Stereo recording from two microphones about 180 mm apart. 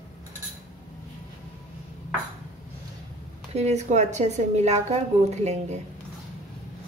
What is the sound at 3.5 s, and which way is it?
A woman's voice, 40° right (ahead or behind).